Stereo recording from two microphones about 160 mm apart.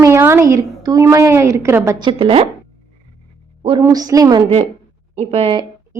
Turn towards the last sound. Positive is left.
turn(degrees=-35)  # may be behind; listen again after turning